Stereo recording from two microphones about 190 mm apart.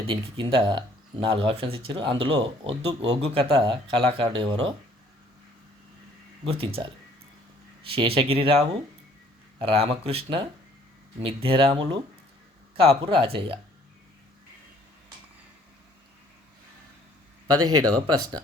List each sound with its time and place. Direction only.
0.1 s speech: 25° right (ahead or behind)
6.4 s speech: 30° right (ahead or behind)
7.9 s speech: 30° right (ahead or behind)
17.6 s speech: 20° right (ahead or behind)